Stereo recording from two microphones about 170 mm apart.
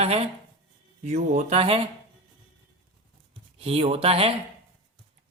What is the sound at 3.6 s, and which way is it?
Speech, 35° right (ahead or behind).